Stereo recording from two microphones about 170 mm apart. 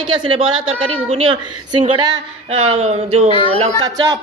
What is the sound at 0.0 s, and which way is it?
Speech, 30° right (ahead or behind).